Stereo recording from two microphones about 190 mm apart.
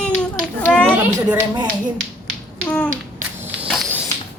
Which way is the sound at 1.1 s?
20° right (ahead or behind).